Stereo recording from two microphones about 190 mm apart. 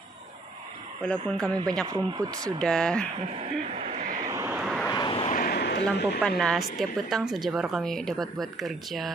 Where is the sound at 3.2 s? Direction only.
30° right (ahead or behind).